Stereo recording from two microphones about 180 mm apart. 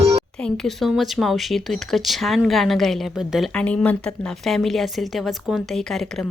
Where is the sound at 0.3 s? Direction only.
5° left (ahead or behind).